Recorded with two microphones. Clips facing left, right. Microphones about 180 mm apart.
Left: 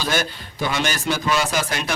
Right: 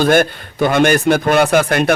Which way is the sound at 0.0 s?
55° right (ahead or behind).